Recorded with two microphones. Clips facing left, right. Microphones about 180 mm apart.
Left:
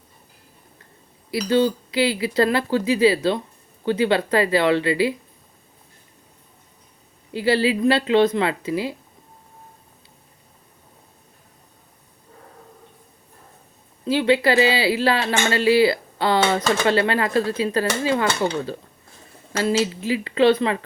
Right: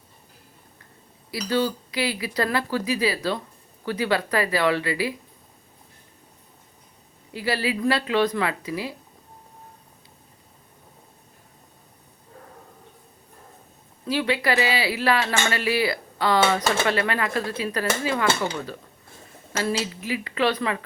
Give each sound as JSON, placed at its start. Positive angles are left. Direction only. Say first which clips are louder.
{"t": 1.3, "sound": "speech", "louder": "left 5 dB", "side_deg": 25}
{"t": 7.3, "sound": "speech", "louder": "left 6 dB", "side_deg": 25}
{"t": 14.0, "sound": "speech", "louder": "left 6 dB", "side_deg": 25}
{"t": 19.8, "sound": "speech", "louder": "left 6 dB", "side_deg": 25}